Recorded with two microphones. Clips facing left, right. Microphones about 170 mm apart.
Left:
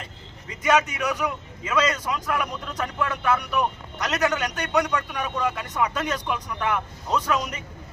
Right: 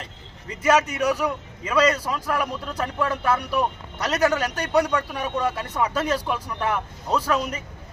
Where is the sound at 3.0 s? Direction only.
35° right (ahead or behind).